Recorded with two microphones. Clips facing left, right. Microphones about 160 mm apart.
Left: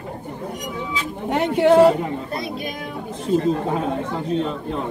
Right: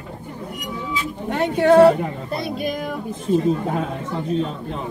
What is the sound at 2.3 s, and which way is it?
Speech, centre (ahead or behind).